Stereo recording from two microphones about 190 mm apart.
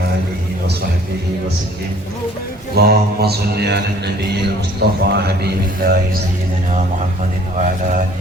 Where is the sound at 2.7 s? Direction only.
55° right (ahead or behind).